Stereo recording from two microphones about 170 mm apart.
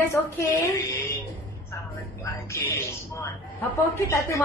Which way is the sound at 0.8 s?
15° left (ahead or behind).